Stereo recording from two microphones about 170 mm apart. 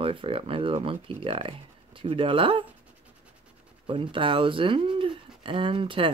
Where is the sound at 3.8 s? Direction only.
30° right (ahead or behind).